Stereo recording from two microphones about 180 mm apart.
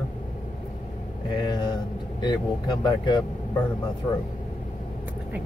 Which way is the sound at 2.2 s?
25° left (ahead or behind).